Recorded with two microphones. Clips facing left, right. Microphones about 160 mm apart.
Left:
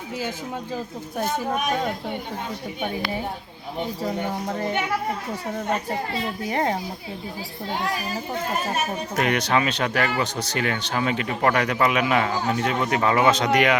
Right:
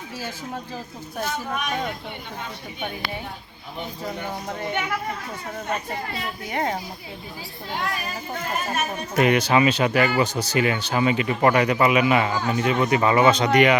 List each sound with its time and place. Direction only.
6.5 s speech: 30° left (ahead or behind)
9.1 s speech: 5° right (ahead or behind)